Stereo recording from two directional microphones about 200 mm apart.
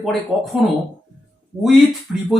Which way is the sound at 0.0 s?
Centre (ahead or behind).